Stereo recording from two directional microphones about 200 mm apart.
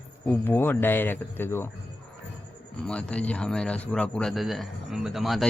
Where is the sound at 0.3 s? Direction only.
10° left (ahead or behind).